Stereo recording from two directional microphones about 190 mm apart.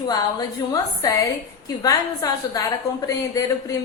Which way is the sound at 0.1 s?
20° left (ahead or behind).